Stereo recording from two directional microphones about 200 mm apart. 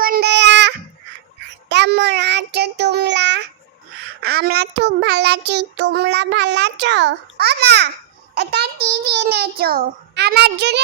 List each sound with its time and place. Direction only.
0.0 s child singing: 50° right (ahead or behind)
1.7 s child singing: 60° right (ahead or behind)
4.2 s a child's voice: 55° right (ahead or behind)